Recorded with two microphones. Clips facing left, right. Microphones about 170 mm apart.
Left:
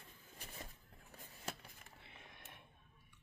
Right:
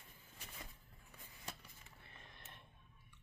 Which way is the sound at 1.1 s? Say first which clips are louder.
Left 4 dB; 40° left (ahead or behind).